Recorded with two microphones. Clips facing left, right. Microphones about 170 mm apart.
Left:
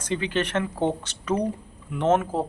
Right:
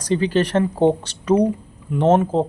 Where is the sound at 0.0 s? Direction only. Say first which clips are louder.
Right 7 dB; 35° right (ahead or behind).